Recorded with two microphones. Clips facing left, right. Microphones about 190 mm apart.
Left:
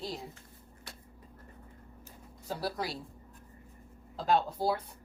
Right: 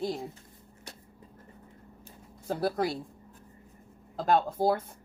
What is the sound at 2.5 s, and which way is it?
Speech, 50° right (ahead or behind).